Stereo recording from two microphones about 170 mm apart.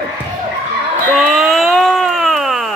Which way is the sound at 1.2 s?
Centre (ahead or behind).